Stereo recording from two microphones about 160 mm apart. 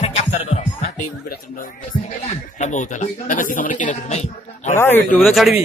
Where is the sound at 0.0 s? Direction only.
45° left (ahead or behind).